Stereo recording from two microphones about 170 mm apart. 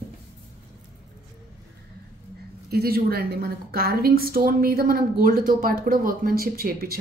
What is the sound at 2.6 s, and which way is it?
A woman's voice, 65° right (ahead or behind).